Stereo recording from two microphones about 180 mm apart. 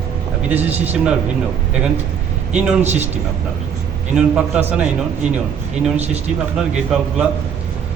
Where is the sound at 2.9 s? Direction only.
40° right (ahead or behind).